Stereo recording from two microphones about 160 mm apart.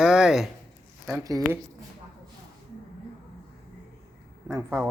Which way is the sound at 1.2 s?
20° right (ahead or behind).